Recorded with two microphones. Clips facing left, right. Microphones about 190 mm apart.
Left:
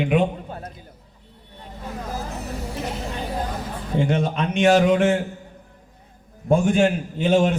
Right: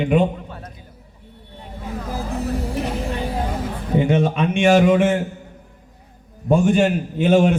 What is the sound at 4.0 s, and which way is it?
A man's voice, 5° right (ahead or behind).